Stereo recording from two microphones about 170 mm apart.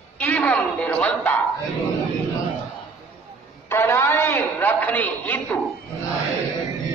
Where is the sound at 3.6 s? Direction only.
15° left (ahead or behind).